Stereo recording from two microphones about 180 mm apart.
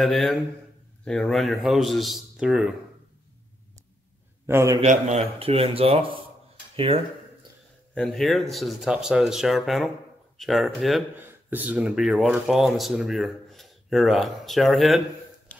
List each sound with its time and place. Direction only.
0.0 s speech: centre (ahead or behind)
4.5 s a man's voice: 15° right (ahead or behind)
4.8 s speech: 40° right (ahead or behind)
7.9 s speech: 5° left (ahead or behind)
11.1 s speech: 10° right (ahead or behind)